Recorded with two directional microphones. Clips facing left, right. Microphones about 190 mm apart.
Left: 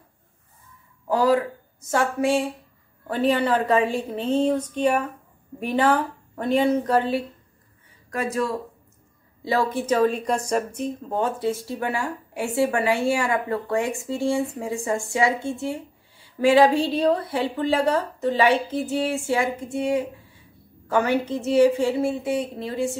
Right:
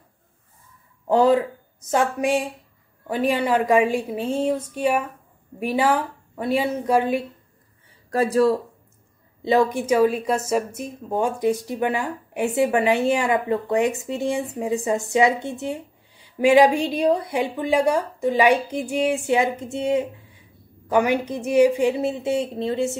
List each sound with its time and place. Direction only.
1.0 s speech: 25° right (ahead or behind)
8.1 s speech: 35° right (ahead or behind)
9.4 s a woman's voice: 20° right (ahead or behind)